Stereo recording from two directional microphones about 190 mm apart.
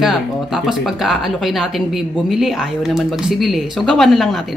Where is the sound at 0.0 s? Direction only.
Centre (ahead or behind).